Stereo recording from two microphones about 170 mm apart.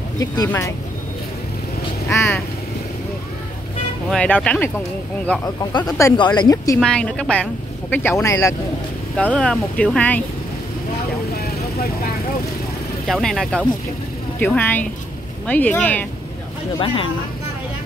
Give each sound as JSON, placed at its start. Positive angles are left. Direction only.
{"t": 0.2, "sound": "speech", "side_deg": 20}
{"t": 2.0, "sound": "speech", "side_deg": 15}
{"t": 4.1, "sound": "speech", "side_deg": 5}
{"t": 5.4, "sound": "speech", "side_deg": 25}
{"t": 6.8, "sound": "speech", "side_deg": 5}
{"t": 9.1, "sound": "speech", "side_deg": 5}
{"t": 13.0, "sound": "speech", "side_deg": 0}
{"t": 16.8, "sound": "speech", "side_deg": 30}